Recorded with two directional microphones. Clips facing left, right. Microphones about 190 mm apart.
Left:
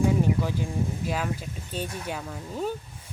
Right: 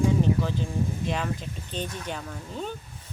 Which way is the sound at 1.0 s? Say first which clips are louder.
Even; 5° left (ahead or behind).